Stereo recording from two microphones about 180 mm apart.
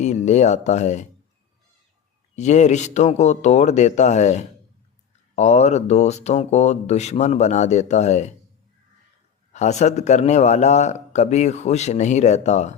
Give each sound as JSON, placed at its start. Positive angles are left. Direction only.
{"t": 0.0, "sound": "speech", "side_deg": 40}
{"t": 2.3, "sound": "speech", "side_deg": 40}
{"t": 9.5, "sound": "speech", "side_deg": 40}